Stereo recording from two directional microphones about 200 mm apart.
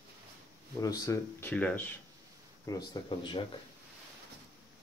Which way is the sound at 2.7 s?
20° left (ahead or behind).